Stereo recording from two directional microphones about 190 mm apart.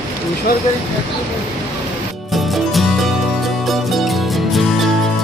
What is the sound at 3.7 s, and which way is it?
Music, centre (ahead or behind).